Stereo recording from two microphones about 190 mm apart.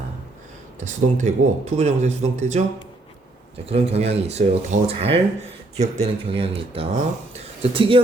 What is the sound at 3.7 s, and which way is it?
Speech, 35° right (ahead or behind).